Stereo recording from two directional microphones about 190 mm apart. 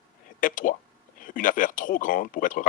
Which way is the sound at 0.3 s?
45° left (ahead or behind).